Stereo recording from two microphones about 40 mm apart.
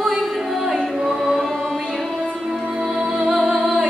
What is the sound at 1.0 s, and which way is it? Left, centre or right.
Singing, centre.